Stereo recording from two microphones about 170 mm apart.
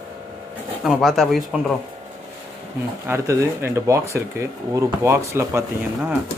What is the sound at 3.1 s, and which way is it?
Speech, 15° right (ahead or behind).